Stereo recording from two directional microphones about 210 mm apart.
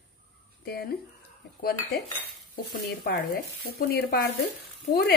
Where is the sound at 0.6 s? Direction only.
50° left (ahead or behind).